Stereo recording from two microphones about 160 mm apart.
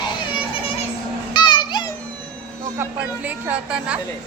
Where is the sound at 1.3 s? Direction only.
30° left (ahead or behind).